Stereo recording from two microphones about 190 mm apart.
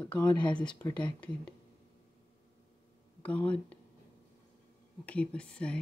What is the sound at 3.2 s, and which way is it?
Speech, 5° left (ahead or behind).